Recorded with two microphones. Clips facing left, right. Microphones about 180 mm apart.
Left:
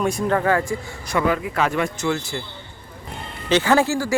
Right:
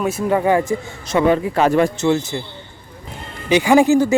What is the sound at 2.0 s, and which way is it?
Speech, 20° right (ahead or behind).